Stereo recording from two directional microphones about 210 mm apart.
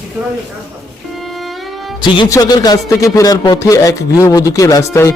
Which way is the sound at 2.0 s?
20° left (ahead or behind).